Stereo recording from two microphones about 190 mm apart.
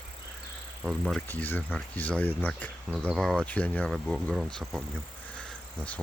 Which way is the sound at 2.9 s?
5° right (ahead or behind).